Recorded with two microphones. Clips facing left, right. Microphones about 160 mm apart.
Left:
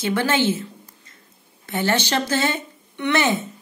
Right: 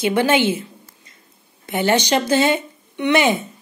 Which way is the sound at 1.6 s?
15° right (ahead or behind).